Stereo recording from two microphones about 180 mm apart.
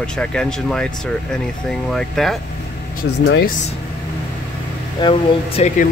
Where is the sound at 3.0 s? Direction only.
90° left.